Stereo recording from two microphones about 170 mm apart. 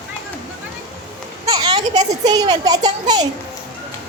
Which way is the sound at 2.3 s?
25° right (ahead or behind).